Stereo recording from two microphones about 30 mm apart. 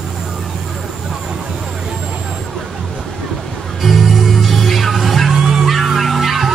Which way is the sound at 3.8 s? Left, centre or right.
Centre.